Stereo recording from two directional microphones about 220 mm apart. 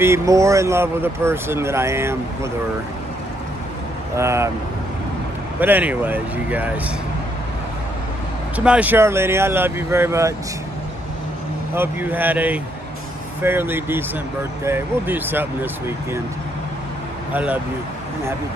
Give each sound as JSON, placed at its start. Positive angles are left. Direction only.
{"t": 0.0, "sound": "speech", "side_deg": -15}
{"t": 4.2, "sound": "speech", "side_deg": -10}
{"t": 5.6, "sound": "speech", "side_deg": -10}
{"t": 8.5, "sound": "speech", "side_deg": -5}
{"t": 11.7, "sound": "speech", "side_deg": -10}
{"t": 17.3, "sound": "speech", "side_deg": -5}